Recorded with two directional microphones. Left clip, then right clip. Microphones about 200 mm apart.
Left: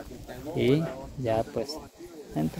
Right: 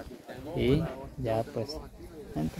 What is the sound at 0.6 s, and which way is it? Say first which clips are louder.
Speech: left 3 dB; 5° left (ahead or behind).